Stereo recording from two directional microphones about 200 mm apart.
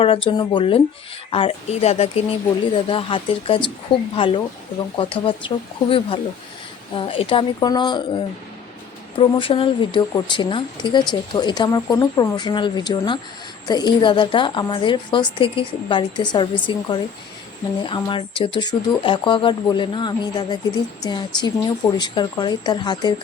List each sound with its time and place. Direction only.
0.0 s a woman's voice: 25° left (ahead or behind)